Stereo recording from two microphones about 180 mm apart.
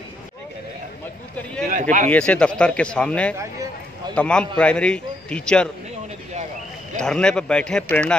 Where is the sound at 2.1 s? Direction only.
5° left (ahead or behind).